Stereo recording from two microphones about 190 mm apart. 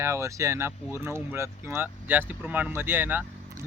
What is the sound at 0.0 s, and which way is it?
Speech, 15° right (ahead or behind).